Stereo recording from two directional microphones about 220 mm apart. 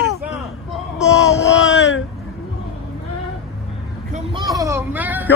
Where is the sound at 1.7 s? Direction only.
65° left (ahead or behind).